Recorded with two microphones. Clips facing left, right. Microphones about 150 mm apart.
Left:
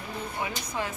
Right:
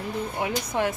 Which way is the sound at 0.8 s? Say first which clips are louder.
Right 7 dB; 65° right (ahead or behind).